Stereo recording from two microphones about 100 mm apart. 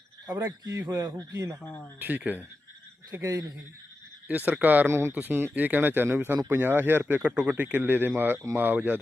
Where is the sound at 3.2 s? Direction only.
35° right (ahead or behind).